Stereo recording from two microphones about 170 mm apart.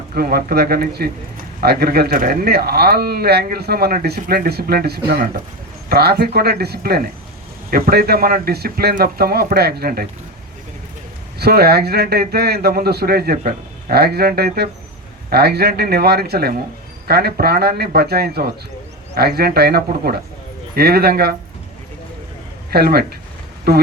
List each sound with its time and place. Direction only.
0.1 s a man's voice: 60° right (ahead or behind)
11.3 s a man's voice: 70° right (ahead or behind)
22.7 s speech: 65° right (ahead or behind)